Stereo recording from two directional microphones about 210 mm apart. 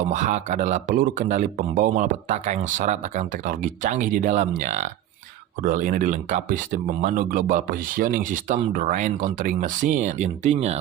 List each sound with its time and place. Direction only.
0.0 s speech: 35° right (ahead or behind)